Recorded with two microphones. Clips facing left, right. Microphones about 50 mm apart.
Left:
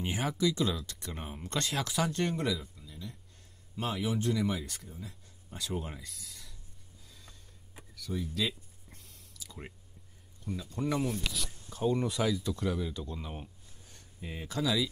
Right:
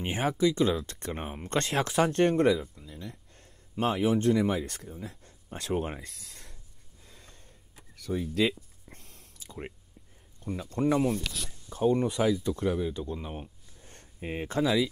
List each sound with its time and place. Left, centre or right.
0.0 s speech: right
1.6 s speech: right
2.7 s a sound: right
4.2 s speech: right
7.1 s gasp: right
7.9 s speech: right
8.9 s a sound: right
10.4 s speech: right
11.1 s speech: right
12.0 s speech: centre
13.8 s speech: right